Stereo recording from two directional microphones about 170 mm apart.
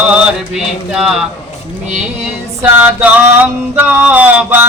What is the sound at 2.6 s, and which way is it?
Male singing, 5° right (ahead or behind).